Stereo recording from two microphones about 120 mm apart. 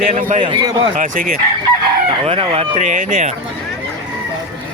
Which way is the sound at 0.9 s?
90° right.